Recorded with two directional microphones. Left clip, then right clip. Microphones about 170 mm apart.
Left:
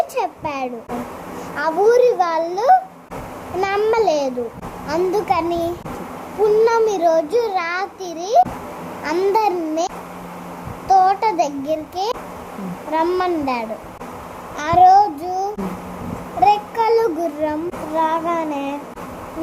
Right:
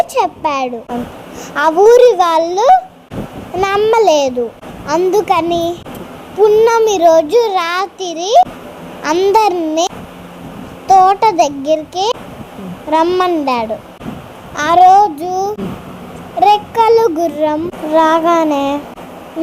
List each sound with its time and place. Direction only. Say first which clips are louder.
0.1 s a child's voice: right 8 dB; 15° right (ahead or behind)
3.9 s child singing: right 7 dB; 20° right (ahead or behind)
6.4 s a child's voice: right 6 dB; 10° right (ahead or behind)
9.0 s child singing: right 7 dB; 15° right (ahead or behind)
13.1 s child singing: right 7 dB; 25° right (ahead or behind)